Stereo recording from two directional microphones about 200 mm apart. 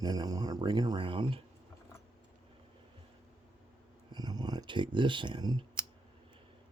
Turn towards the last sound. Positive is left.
turn(degrees=-20)  # may be behind; listen again after turning